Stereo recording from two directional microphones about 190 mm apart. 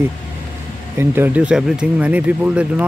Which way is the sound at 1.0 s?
10° right (ahead or behind).